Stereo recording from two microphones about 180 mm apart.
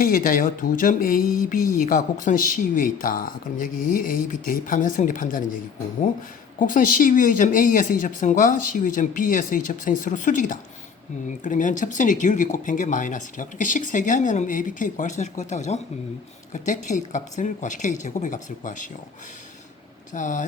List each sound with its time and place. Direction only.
0.0 s speech: 50° left (ahead or behind)
6.6 s speech: 50° left (ahead or behind)
20.1 s speech: 45° left (ahead or behind)